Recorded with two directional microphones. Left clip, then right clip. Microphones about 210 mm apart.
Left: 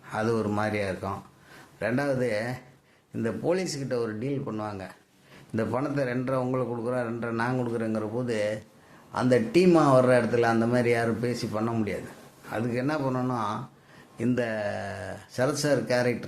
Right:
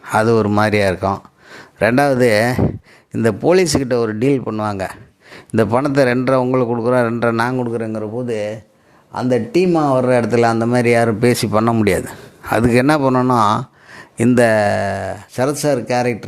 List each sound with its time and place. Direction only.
0.0 s a man's voice: 45° right (ahead or behind)